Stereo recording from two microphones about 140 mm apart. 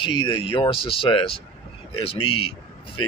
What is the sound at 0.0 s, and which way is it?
Speech, 35° left (ahead or behind).